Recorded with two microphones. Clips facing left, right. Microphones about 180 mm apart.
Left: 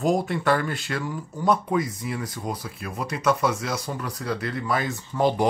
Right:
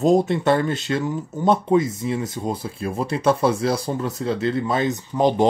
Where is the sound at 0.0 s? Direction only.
25° right (ahead or behind).